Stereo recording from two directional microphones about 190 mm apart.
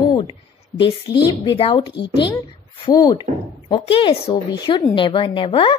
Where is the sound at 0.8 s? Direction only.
25° left (ahead or behind).